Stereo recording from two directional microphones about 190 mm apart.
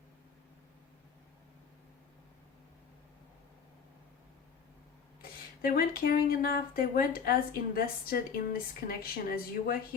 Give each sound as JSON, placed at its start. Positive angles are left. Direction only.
{"t": 5.6, "sound": "a woman's voice", "side_deg": 50}